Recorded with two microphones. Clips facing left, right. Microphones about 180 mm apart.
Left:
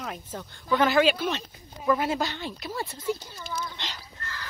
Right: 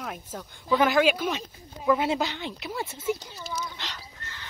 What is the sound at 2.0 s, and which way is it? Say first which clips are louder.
Speech: right 1 dB; 20° right (ahead or behind).